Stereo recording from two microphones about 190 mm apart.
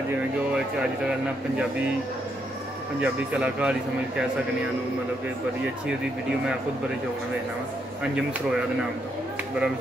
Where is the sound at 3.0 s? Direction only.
5° right (ahead or behind).